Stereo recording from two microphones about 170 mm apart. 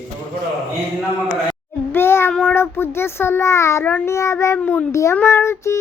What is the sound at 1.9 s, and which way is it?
Child singing, 15° left (ahead or behind).